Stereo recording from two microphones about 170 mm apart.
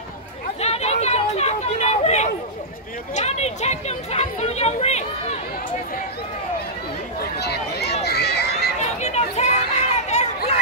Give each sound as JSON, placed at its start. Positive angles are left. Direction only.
{"t": 0.6, "sound": "chatter", "side_deg": 40}
{"t": 3.2, "sound": "speech", "side_deg": 40}
{"t": 7.2, "sound": "chatter", "side_deg": 75}
{"t": 8.0, "sound": "a sound", "side_deg": 75}
{"t": 8.7, "sound": "chatter", "side_deg": 40}